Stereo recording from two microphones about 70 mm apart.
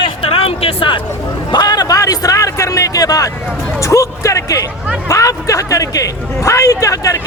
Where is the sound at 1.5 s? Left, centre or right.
Left.